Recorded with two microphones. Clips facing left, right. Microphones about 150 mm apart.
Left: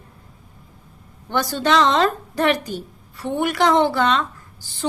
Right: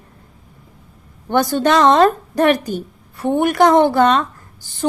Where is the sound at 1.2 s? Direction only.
50° right (ahead or behind).